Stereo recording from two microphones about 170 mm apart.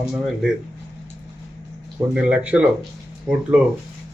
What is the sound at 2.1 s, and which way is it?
Speech, 5° right (ahead or behind).